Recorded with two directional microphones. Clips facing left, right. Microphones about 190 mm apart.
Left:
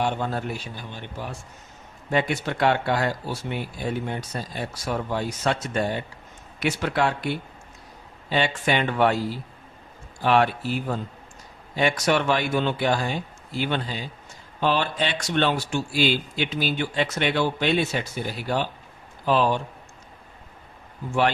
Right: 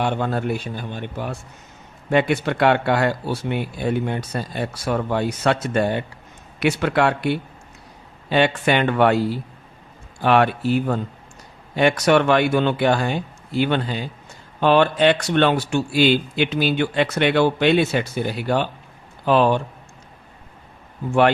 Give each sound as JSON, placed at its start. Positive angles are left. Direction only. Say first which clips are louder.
{"t": 0.0, "sound": "a man's voice", "louder": "right 4 dB", "side_deg": -65}
{"t": 21.1, "sound": "a man's voice", "louder": "right 6 dB", "side_deg": -60}